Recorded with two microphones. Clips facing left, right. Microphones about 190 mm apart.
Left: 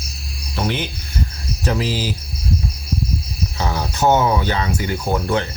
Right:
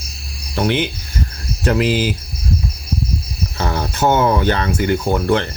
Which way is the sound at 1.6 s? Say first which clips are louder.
Right 5 dB; 65° right (ahead or behind).